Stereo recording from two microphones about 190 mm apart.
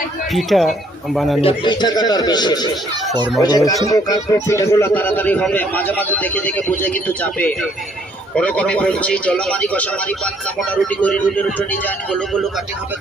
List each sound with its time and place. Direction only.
0.3 s speech: centre (ahead or behind)
1.4 s a man's voice: 25° left (ahead or behind); by 12.5 s centre (ahead or behind)